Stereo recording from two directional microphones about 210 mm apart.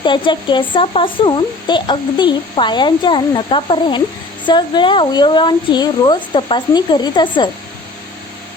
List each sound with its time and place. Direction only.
0.0 s speech: 20° left (ahead or behind)